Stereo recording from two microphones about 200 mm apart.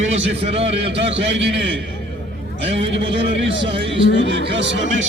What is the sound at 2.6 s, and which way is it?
A man's voice, 30° right (ahead or behind).